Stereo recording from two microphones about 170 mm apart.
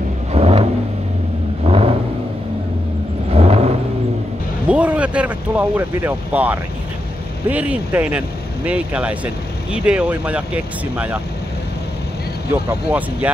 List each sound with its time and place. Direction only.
0.3 s vehicle: 35° right (ahead or behind)
3.3 s vehicle: 35° right (ahead or behind)
4.6 s speech: 5° right (ahead or behind)